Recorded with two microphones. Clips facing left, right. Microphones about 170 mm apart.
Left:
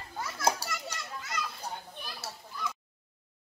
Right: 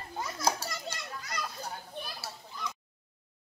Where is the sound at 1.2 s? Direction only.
40° right (ahead or behind).